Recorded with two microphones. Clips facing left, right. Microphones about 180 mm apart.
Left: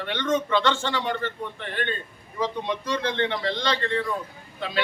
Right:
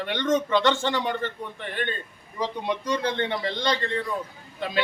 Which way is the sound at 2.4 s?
15° right (ahead or behind).